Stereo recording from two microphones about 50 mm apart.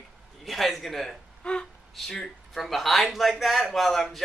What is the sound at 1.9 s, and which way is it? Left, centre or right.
Speech, centre.